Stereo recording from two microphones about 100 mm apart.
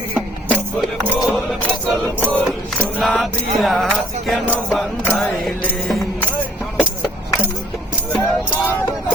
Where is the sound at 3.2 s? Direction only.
Centre (ahead or behind).